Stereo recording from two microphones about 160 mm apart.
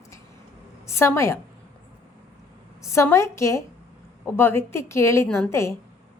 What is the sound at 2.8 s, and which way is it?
A woman's voice, 15° left (ahead or behind).